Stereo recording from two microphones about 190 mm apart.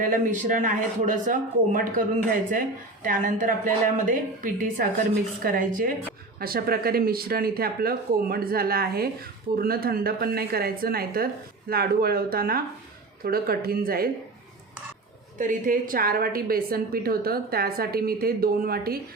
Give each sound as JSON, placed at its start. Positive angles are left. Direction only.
{"t": 0.1, "sound": "speech", "side_deg": -45}
{"t": 15.4, "sound": "speech", "side_deg": -45}